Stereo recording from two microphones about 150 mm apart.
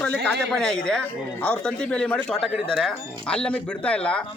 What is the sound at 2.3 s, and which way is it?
Speech, 40° left (ahead or behind).